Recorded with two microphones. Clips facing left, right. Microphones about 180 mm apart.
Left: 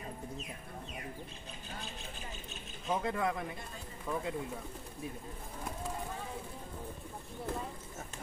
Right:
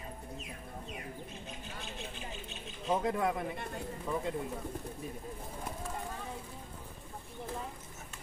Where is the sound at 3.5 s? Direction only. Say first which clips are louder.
Right 6 dB; 65° right (ahead or behind).